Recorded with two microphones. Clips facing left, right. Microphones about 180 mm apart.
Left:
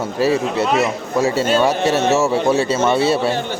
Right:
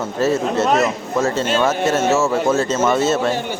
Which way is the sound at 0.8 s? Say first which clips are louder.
Left 1 dB; 15° left (ahead or behind).